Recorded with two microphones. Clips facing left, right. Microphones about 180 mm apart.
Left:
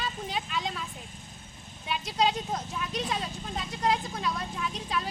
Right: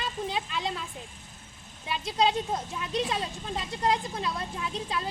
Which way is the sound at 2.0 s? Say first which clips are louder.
Right 2 dB; 25° right (ahead or behind).